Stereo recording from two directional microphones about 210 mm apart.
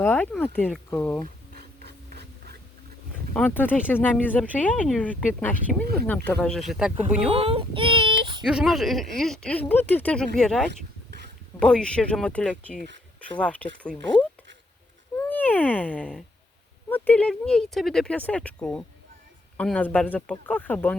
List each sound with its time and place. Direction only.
0.0 s speech: 10° left (ahead or behind)
1.2 s a sound: 45° right (ahead or behind)
3.3 s speech: 10° left (ahead or behind)
7.3 s child singing: 25° right (ahead or behind)
8.4 s speech: centre (ahead or behind)